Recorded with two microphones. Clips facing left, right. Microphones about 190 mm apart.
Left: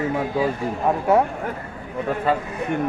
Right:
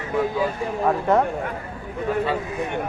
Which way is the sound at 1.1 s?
10° left (ahead or behind).